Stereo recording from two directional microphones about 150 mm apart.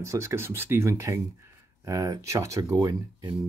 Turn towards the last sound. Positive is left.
turn(degrees=-25)  # may be behind; listen again after turning